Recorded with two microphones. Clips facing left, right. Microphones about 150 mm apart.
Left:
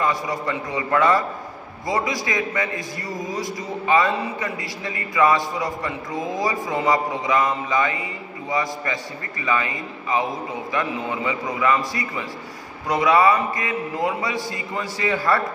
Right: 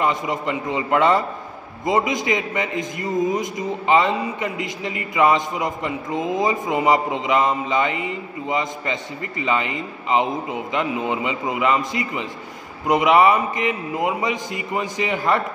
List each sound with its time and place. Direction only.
0.0 s a man's voice: 20° right (ahead or behind)